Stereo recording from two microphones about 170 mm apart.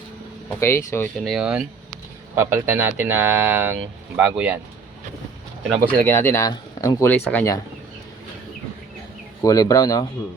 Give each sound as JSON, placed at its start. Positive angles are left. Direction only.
{"t": 0.6, "sound": "speech", "side_deg": 15}
{"t": 1.2, "sound": "speech", "side_deg": 0}
{"t": 2.3, "sound": "speech", "side_deg": -15}
{"t": 5.8, "sound": "speech", "side_deg": 15}
{"t": 9.4, "sound": "speech", "side_deg": 20}